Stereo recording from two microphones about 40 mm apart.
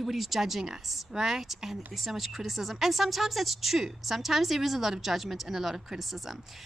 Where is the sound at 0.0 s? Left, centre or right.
Centre.